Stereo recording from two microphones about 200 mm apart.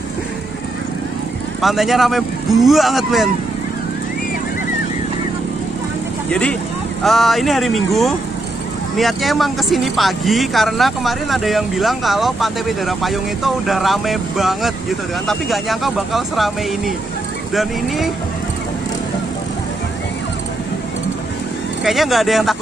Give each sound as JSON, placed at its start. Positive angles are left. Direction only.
{"t": 1.6, "sound": "speech", "side_deg": 0}
{"t": 7.0, "sound": "speech", "side_deg": 0}
{"t": 21.8, "sound": "speech", "side_deg": 0}